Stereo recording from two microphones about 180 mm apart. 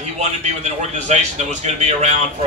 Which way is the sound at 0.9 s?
40° right (ahead or behind).